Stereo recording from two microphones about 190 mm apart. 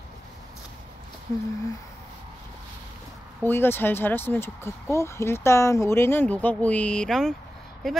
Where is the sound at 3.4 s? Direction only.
10° left (ahead or behind).